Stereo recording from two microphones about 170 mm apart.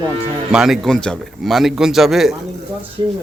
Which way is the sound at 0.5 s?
Centre (ahead or behind).